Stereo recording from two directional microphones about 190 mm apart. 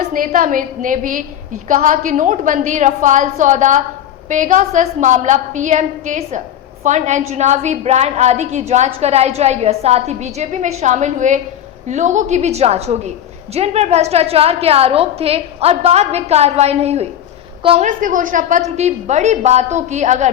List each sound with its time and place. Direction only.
0.1 s a woman's voice: 45° right (ahead or behind)
17.8 s a woman's voice: 45° right (ahead or behind)